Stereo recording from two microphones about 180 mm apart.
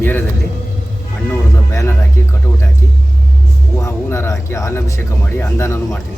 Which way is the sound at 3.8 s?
15° left (ahead or behind).